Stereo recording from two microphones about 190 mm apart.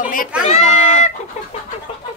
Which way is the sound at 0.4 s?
35° left (ahead or behind).